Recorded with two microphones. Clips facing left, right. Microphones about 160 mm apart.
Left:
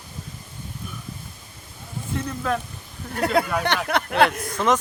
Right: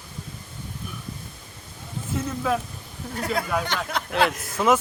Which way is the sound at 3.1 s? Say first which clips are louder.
Left 4 dB; 65° left (ahead or behind).